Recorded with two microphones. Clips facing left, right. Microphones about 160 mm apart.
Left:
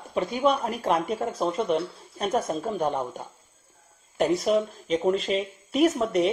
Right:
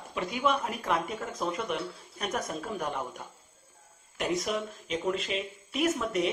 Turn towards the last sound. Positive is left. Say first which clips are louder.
# left 7 dB
turn(degrees=35)  # may be behind; listen again after turning